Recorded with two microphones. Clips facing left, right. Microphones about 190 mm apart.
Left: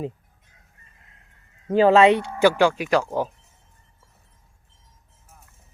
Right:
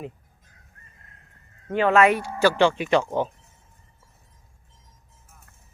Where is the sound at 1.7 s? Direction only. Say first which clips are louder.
Left 4 dB; 30° left (ahead or behind).